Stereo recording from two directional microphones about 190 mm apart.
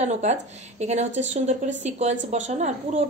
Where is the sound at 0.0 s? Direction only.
35° right (ahead or behind).